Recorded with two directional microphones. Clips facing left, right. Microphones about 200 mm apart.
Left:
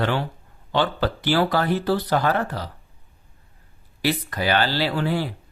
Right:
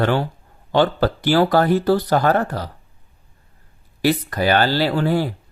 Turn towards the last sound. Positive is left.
turn(degrees=-45)  # may be behind; listen again after turning